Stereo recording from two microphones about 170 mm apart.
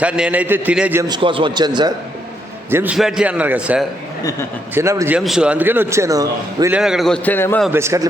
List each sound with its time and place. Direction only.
0.0 s a man's voice: 5° right (ahead or behind)
1.0 s a man's voice: 30° right (ahead or behind)
2.6 s a man's voice: 10° right (ahead or behind)
5.2 s a man's voice: 5° right (ahead or behind); by 6.7 s 20° right (ahead or behind)
6.7 s a man's voice: 5° right (ahead or behind); by 7.6 s 10° left (ahead or behind)
7.7 s a man's voice: 15° right (ahead or behind)